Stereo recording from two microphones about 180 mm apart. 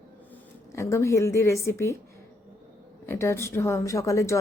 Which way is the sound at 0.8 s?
15° left (ahead or behind).